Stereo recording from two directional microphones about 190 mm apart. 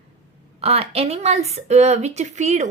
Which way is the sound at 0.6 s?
30° right (ahead or behind).